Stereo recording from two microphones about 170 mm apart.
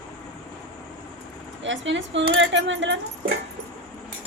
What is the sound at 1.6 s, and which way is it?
Speech, 90° right.